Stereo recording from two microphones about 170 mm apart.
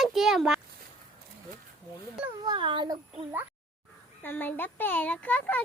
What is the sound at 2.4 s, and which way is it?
Speech, 25° right (ahead or behind).